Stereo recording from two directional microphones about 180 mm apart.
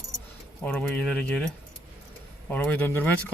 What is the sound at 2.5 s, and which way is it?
Speech, 10° left (ahead or behind).